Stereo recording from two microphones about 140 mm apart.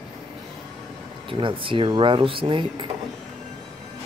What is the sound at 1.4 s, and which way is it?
Speech, 35° right (ahead or behind).